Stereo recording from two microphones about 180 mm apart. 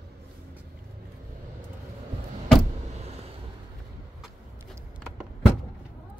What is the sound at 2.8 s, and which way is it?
Vehicle, 40° right (ahead or behind).